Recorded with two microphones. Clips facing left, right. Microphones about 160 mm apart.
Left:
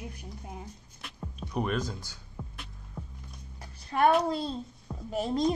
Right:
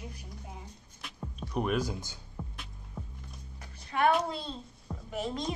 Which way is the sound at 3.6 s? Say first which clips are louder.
Left 3 dB; 35° left (ahead or behind).